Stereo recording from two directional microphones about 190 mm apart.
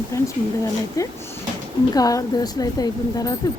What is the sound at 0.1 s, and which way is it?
Speech, 15° left (ahead or behind).